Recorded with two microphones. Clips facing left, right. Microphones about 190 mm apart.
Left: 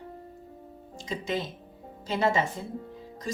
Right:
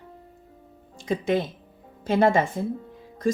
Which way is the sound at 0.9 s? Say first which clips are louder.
Right 7 dB; 55° right (ahead or behind).